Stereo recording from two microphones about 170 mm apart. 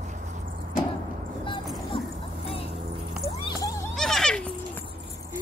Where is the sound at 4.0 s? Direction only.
Centre (ahead or behind).